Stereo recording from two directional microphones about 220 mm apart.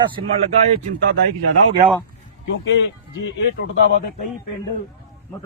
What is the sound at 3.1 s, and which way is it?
Speech, 55° left (ahead or behind).